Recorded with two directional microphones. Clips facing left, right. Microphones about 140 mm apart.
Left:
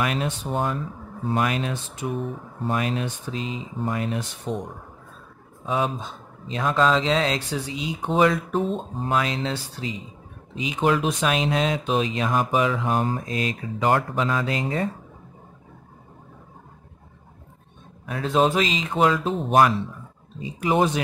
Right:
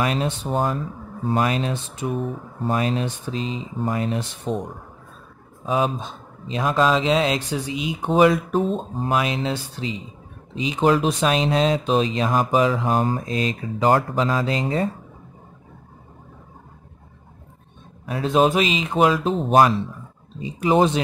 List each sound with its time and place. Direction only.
0.0 s speech: 30° right (ahead or behind)
5.7 s speech: 20° right (ahead or behind)
8.5 s speech: centre (ahead or behind)
9.1 s speech: 15° right (ahead or behind)
10.5 s speech: 30° right (ahead or behind)
18.0 s speech: 20° right (ahead or behind)